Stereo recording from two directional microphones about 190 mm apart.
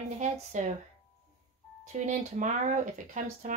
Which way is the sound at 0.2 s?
40° right (ahead or behind).